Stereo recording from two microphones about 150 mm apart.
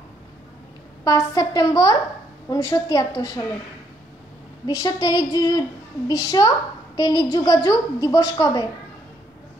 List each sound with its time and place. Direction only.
1.0 s a woman's voice: 25° left (ahead or behind)
4.6 s a woman's voice: 25° left (ahead or behind)